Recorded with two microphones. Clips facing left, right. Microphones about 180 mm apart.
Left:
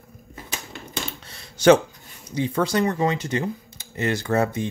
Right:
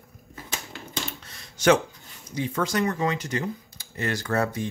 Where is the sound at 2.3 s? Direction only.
30° left (ahead or behind).